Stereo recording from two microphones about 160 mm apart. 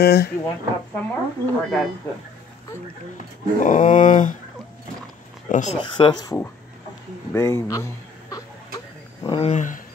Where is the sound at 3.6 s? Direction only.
55° left (ahead or behind).